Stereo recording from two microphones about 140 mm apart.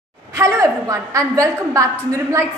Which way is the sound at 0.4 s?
20° right (ahead or behind).